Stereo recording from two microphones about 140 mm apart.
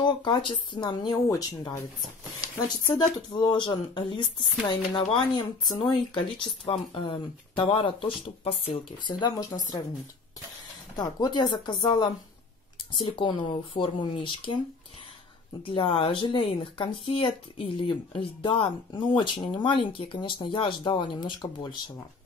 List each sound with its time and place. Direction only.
0.0 s speech: 35° left (ahead or behind)
3.3 s speech: 35° left (ahead or behind)
11.0 s speech: 30° left (ahead or behind)
15.6 s speech: 40° left (ahead or behind)